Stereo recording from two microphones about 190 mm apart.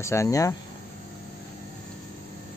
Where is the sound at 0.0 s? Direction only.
15° left (ahead or behind).